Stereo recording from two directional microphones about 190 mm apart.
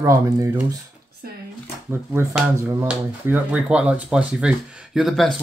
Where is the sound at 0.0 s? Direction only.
15° right (ahead or behind).